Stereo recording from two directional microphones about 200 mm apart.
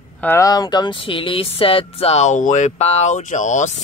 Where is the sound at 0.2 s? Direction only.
15° left (ahead or behind).